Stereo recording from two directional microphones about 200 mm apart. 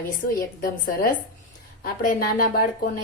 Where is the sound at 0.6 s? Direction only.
45° left (ahead or behind).